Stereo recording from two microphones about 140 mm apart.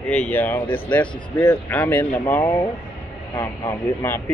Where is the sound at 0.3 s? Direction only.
15° left (ahead or behind).